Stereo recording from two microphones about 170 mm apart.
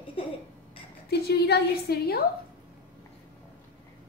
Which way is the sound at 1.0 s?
70° left (ahead or behind).